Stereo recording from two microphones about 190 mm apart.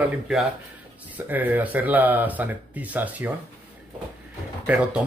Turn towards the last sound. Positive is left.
turn(degrees=-5)  # may be behind; listen again after turning